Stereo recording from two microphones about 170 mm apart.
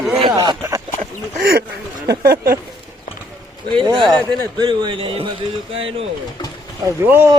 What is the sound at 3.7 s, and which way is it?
Speech, 25° right (ahead or behind).